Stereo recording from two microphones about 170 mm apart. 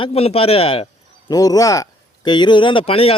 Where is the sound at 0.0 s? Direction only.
35° left (ahead or behind).